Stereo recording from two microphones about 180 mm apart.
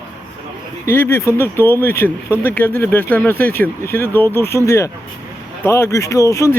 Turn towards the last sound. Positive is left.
turn(degrees=15)  # may be behind; listen again after turning